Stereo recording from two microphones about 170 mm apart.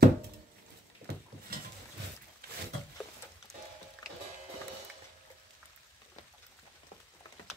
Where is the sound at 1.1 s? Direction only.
75° right (ahead or behind).